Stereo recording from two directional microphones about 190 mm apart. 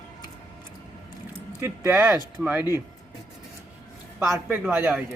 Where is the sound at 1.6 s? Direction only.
15° right (ahead or behind).